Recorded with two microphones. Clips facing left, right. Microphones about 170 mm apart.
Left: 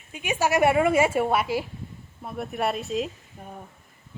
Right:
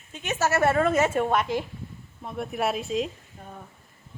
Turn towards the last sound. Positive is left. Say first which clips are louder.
# left 2 dB
turn(degrees=15)  # may be behind; listen again after turning